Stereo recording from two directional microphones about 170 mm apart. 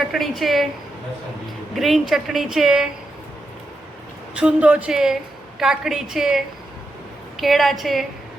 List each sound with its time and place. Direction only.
0.1 s speech: centre (ahead or behind)
1.7 s speech: centre (ahead or behind)
4.4 s speech: 5° right (ahead or behind)